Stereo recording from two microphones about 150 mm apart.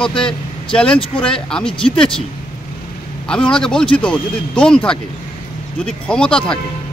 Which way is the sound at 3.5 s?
5° left (ahead or behind).